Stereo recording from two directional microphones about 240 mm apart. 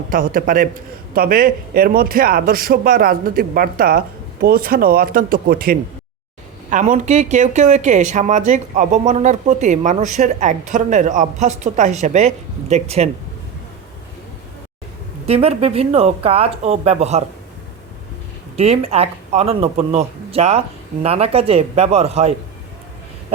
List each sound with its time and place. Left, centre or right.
0.1 s a man's voice: right
15.3 s speech: right
18.5 s speech: right